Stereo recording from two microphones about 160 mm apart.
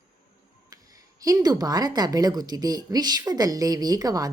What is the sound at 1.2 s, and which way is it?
A woman's voice, 25° right (ahead or behind).